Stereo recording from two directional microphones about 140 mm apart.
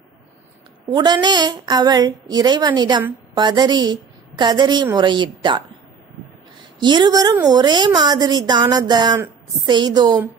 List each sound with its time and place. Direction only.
0.8 s a woman's voice: 30° right (ahead or behind)
6.8 s a woman's voice: 30° right (ahead or behind)